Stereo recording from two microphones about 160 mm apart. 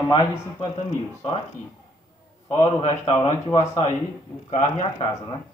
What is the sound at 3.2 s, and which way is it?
Speech, 25° left (ahead or behind).